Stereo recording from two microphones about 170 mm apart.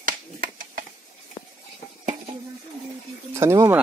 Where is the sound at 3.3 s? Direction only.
15° right (ahead or behind).